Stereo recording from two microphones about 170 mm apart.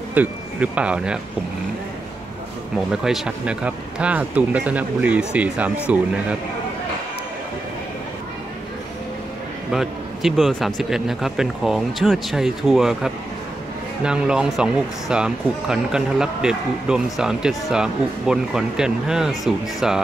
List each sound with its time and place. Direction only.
0.1 s speech: 10° right (ahead or behind)
2.9 s speech: 5° right (ahead or behind)
9.7 s speech: centre (ahead or behind)